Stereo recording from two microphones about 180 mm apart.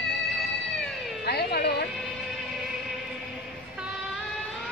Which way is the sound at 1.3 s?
60° left (ahead or behind).